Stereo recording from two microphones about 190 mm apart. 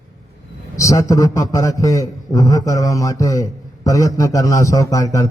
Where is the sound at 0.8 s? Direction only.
15° left (ahead or behind).